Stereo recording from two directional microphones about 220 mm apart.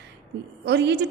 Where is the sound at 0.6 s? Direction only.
50° right (ahead or behind).